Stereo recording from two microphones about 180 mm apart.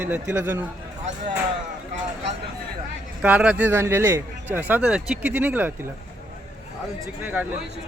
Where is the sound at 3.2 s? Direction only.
5° right (ahead or behind).